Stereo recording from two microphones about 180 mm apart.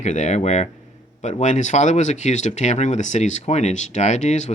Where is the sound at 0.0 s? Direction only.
40° left (ahead or behind).